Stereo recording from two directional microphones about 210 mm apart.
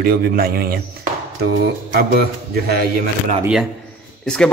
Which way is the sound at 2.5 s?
50° right (ahead or behind).